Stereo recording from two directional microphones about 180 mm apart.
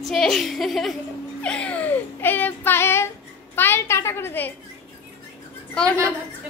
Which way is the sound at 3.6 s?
15° left (ahead or behind).